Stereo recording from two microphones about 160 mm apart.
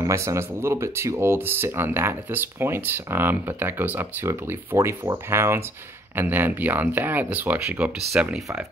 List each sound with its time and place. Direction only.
0.0 s speech: 20° right (ahead or behind)